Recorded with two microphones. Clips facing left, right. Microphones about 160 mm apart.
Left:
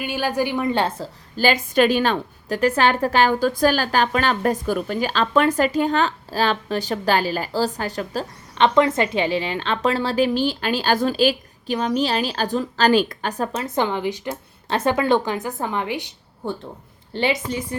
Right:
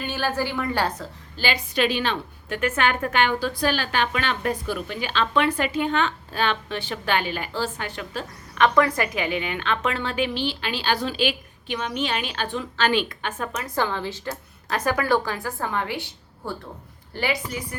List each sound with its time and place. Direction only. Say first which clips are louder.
0.0 s a woman's voice: left 3 dB; 15° left (ahead or behind)
1.4 s a woman's voice: left 6 dB; 45° left (ahead or behind)
8.5 s a woman's voice: left 3 dB; 25° left (ahead or behind)